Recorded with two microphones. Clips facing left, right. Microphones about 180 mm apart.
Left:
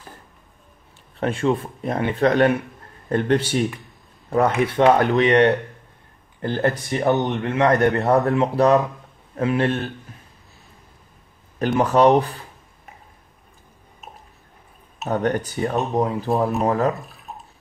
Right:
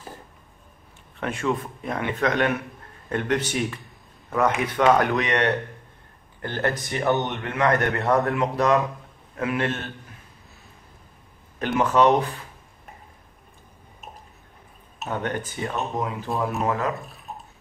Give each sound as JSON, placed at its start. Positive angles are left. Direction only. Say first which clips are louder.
{"t": 1.1, "sound": "a man's voice", "louder": "left 5 dB", "side_deg": 30}
{"t": 11.7, "sound": "speech", "louder": "left 3 dB", "side_deg": 35}
{"t": 15.0, "sound": "speech", "louder": "left 6 dB", "side_deg": 40}
{"t": 16.9, "sound": "drip", "louder": "even", "side_deg": 0}